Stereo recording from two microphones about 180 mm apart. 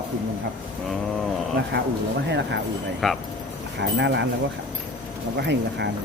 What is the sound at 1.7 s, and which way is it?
Speech, 80° right.